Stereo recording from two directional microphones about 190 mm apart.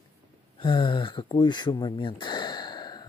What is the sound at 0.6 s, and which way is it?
Speech, 25° left (ahead or behind).